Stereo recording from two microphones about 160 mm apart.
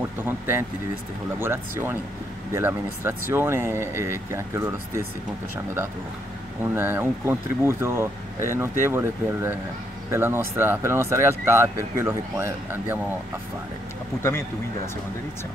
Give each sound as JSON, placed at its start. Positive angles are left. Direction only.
{"t": 0.2, "sound": "speech", "side_deg": -15}
{"t": 6.6, "sound": "speech", "side_deg": -15}